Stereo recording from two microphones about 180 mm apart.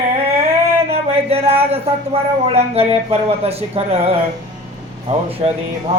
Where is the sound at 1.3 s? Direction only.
35° right (ahead or behind).